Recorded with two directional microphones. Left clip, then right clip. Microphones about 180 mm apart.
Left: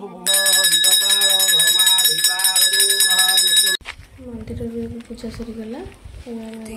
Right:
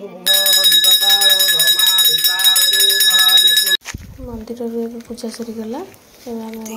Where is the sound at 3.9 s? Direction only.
55° right (ahead or behind).